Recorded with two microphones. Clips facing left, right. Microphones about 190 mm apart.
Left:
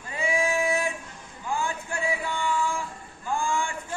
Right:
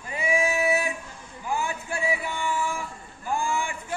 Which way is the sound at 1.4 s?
15° right (ahead or behind).